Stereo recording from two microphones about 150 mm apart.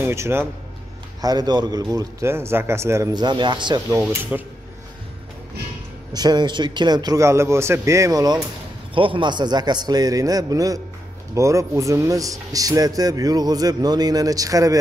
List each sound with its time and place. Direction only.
0.0 s speech: 15° right (ahead or behind)
1.2 s speech: 25° right (ahead or behind)
4.0 s speech: 10° right (ahead or behind)
6.1 s speech: 30° right (ahead or behind)
8.9 s speech: 35° right (ahead or behind)